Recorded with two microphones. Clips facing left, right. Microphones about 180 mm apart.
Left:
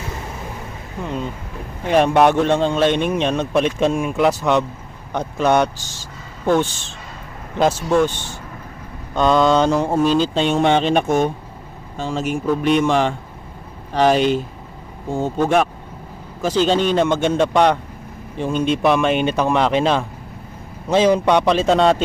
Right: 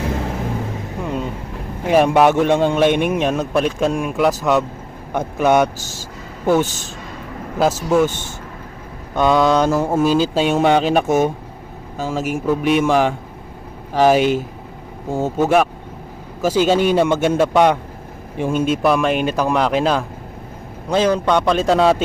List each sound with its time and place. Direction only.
0.0 s vehicle: 65° right (ahead or behind)
1.9 s a man's voice: 10° right (ahead or behind)
7.9 s a man's voice: 5° right (ahead or behind)
9.1 s a man's voice: 5° right (ahead or behind)